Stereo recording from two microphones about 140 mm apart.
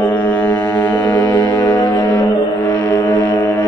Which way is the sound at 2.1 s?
15° left (ahead or behind).